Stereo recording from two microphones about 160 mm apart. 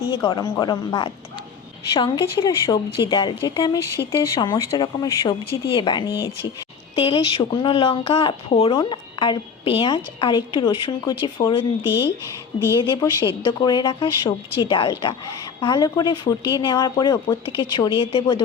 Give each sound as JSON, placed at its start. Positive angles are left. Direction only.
{"t": 0.1, "sound": "a woman's voice", "side_deg": 25}
{"t": 13.0, "sound": "a woman's voice", "side_deg": 20}